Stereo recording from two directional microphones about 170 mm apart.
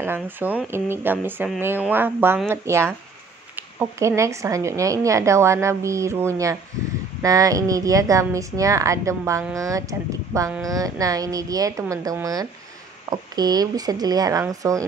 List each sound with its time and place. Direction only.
0.0 s a woman's voice: 10° right (ahead or behind)